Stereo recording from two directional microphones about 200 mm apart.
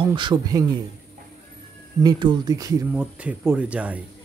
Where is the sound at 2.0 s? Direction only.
20° right (ahead or behind).